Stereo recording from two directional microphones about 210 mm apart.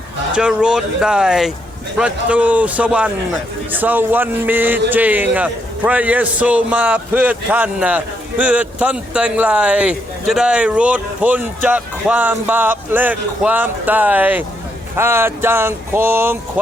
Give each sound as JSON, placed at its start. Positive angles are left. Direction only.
{"t": 0.3, "sound": "speech", "side_deg": -5}